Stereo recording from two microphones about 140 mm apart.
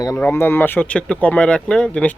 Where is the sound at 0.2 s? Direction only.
15° left (ahead or behind).